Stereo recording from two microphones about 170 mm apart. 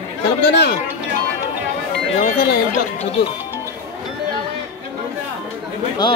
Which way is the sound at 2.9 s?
30° left (ahead or behind).